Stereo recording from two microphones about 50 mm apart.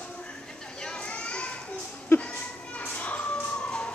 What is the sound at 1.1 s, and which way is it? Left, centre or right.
Children playing, left.